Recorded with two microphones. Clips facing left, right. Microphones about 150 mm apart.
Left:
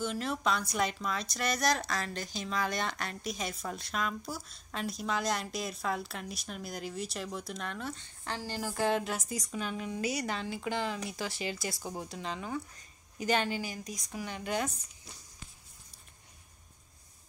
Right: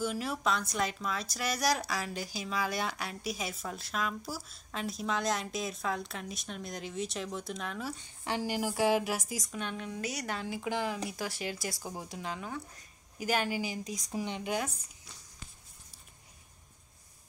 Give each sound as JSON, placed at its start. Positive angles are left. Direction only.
{"t": 0.0, "sound": "a woman's voice", "side_deg": -5}
{"t": 13.8, "sound": "speech", "side_deg": -25}